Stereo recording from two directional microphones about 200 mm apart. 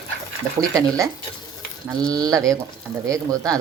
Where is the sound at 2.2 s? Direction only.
20° right (ahead or behind).